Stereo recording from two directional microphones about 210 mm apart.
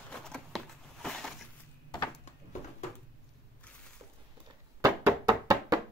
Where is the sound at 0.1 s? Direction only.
5° left (ahead or behind).